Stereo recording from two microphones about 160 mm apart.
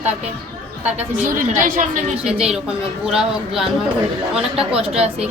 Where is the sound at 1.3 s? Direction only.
55° right (ahead or behind).